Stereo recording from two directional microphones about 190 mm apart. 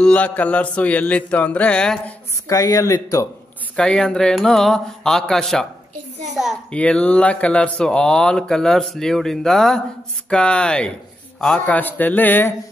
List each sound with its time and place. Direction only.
0.0 s mantra: 5° left (ahead or behind)
2.4 s mantra: 20° left (ahead or behind)
3.7 s speech: 5° left (ahead or behind)
11.3 s mantra: 5° left (ahead or behind)